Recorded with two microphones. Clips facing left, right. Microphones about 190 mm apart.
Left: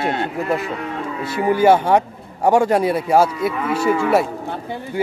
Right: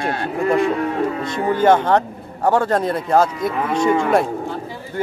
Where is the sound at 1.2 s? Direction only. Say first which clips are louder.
Left 4 dB; 10° left (ahead or behind).